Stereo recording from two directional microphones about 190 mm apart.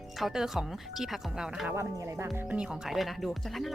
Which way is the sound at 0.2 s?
Centre (ahead or behind).